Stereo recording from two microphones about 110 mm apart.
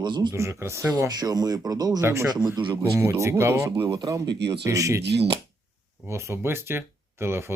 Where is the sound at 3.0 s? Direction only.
20° right (ahead or behind).